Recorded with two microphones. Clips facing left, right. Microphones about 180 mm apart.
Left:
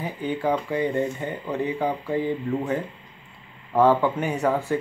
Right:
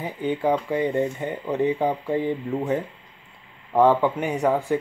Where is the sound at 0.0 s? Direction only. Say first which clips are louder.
Right 2 dB; 20° right (ahead or behind).